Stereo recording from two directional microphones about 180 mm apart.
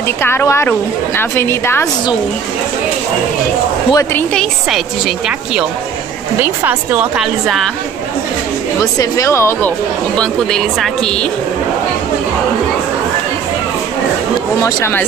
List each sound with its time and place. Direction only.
0.2 s a woman's voice: 15° left (ahead or behind)
3.9 s a woman's voice: 10° left (ahead or behind)
8.9 s a woman's voice: 20° left (ahead or behind)
10.1 s a woman's voice: 5° left (ahead or behind)
14.6 s a woman's voice: 15° left (ahead or behind)